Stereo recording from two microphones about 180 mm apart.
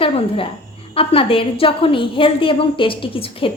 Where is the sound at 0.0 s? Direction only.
30° left (ahead or behind).